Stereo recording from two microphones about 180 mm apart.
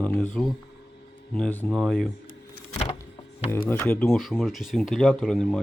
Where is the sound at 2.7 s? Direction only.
40° left (ahead or behind).